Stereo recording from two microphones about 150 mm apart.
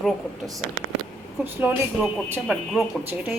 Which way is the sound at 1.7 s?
10° right (ahead or behind).